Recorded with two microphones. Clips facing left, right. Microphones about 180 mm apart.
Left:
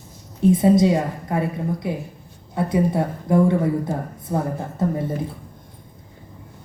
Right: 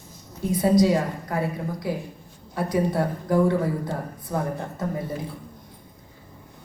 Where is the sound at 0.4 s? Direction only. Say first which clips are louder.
Left 4 dB; 25° left (ahead or behind).